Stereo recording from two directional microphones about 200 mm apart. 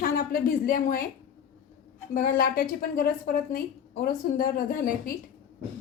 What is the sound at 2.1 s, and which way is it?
Speech, 45° left (ahead or behind).